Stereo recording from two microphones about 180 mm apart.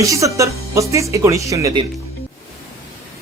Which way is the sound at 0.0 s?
15° right (ahead or behind).